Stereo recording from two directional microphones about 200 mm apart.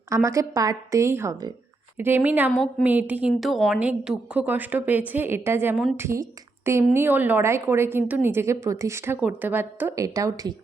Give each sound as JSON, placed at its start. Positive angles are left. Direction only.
{"t": 0.1, "sound": "a woman's voice", "side_deg": -15}
{"t": 2.5, "sound": "a woman's voice", "side_deg": 5}
{"t": 2.8, "sound": "a woman's voice", "side_deg": -10}